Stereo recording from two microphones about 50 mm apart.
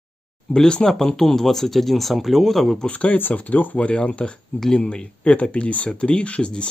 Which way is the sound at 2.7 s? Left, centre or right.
Left.